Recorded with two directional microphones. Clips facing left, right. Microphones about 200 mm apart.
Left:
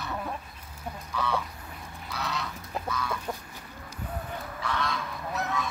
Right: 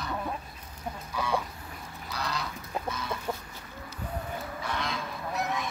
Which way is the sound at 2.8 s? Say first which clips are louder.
Left 4 dB; 25° right (ahead or behind).